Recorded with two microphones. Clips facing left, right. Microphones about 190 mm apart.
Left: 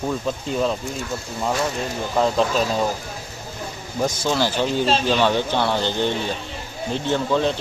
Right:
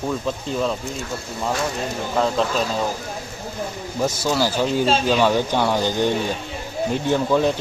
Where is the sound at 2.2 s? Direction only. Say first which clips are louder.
Left 1 dB; centre (ahead or behind).